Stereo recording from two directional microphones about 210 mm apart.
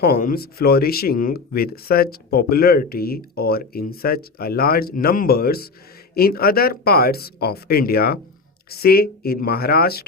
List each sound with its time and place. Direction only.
0.0 s speech: 45° left (ahead or behind)